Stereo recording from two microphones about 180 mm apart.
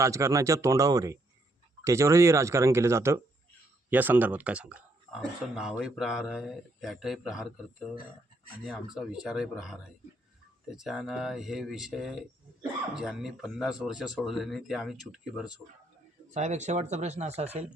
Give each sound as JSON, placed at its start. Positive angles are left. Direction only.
{"t": 0.0, "sound": "speech", "side_deg": -15}
{"t": 16.3, "sound": "speech", "side_deg": -40}